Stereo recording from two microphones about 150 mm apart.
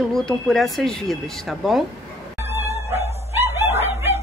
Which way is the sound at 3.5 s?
20° right (ahead or behind).